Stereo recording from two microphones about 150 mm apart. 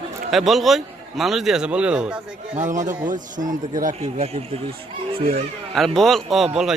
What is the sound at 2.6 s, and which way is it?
Speech, 55° right (ahead or behind).